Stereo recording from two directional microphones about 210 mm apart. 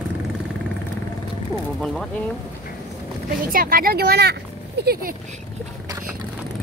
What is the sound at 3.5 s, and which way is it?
Speech, 45° right (ahead or behind).